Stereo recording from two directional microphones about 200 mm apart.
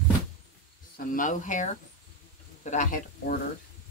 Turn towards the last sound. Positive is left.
turn(degrees=40)  # may be behind; listen again after turning